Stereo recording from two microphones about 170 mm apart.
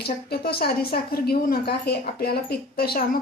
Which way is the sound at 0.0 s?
65° left (ahead or behind).